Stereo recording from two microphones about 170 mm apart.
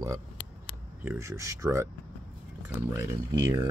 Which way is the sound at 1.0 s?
15° right (ahead or behind).